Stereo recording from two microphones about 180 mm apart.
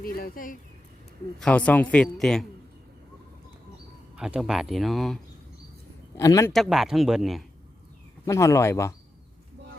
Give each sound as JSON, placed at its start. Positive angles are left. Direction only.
{"t": 0.0, "sound": "speech", "side_deg": 50}
{"t": 1.4, "sound": "a man's voice", "side_deg": 5}
{"t": 4.2, "sound": "speech", "side_deg": -5}
{"t": 6.1, "sound": "a man's voice", "side_deg": 15}
{"t": 6.5, "sound": "speech", "side_deg": 0}
{"t": 8.2, "sound": "a man's voice", "side_deg": 15}